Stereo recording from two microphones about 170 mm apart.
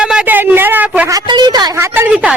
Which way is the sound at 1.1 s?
25° right (ahead or behind).